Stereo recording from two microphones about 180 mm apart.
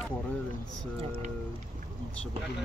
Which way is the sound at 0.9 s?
30° right (ahead or behind).